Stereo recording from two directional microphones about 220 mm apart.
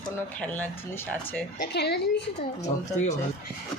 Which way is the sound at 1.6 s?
50° left (ahead or behind).